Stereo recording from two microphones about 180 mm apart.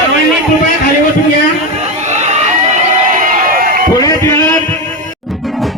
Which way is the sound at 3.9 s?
20° left (ahead or behind).